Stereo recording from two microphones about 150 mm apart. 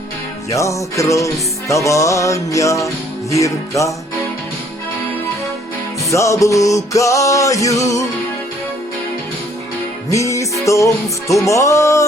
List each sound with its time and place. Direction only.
0.5 s music: 20° left (ahead or behind)
6.1 s music: 20° left (ahead or behind)
10.1 s music: 20° left (ahead or behind)